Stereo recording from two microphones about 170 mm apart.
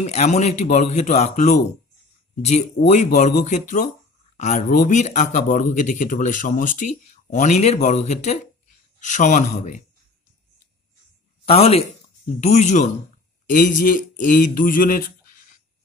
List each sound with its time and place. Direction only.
0.0 s speech: 40° left (ahead or behind)
11.4 s speech: 35° left (ahead or behind); by 15.0 s 55° left (ahead or behind)